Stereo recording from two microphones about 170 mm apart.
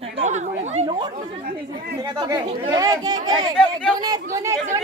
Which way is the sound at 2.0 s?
25° right (ahead or behind).